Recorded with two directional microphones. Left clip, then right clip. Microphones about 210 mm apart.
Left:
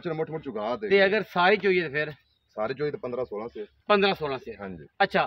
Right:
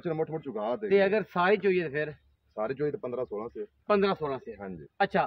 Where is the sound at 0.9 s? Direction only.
10° left (ahead or behind).